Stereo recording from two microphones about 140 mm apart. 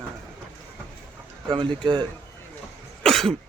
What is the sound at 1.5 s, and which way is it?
Speech, 35° right (ahead or behind).